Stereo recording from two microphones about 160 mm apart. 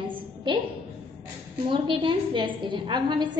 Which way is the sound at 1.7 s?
30° right (ahead or behind).